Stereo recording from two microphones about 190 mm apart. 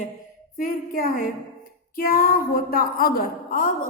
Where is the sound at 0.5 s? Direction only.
45° left (ahead or behind).